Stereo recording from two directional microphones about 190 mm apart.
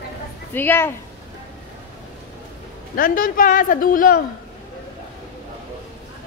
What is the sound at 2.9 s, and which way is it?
A man's voice, 50° left (ahead or behind).